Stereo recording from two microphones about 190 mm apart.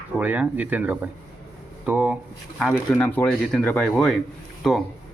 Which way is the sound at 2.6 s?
5° left (ahead or behind).